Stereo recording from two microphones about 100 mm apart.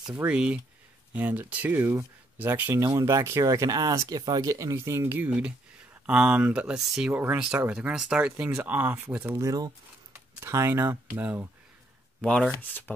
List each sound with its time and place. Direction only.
0.2 s speech: 10° right (ahead or behind)
3.0 s speech: 30° right (ahead or behind)
6.0 s speech: 10° right (ahead or behind)
9.2 s speech: 25° right (ahead or behind)
12.2 s speech: 5° left (ahead or behind)
12.5 s speech: 20° left (ahead or behind)